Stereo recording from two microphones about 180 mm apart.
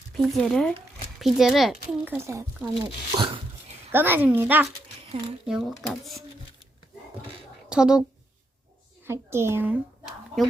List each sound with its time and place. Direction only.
0.1 s a child's voice: centre (ahead or behind)
2.1 s speech: 15° right (ahead or behind)
3.9 s a child's voice: 10° right (ahead or behind)
7.7 s a child's voice: 5° right (ahead or behind)
9.0 s speech: 15° right (ahead or behind)